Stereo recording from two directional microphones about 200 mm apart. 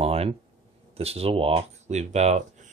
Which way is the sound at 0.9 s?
30° right (ahead or behind).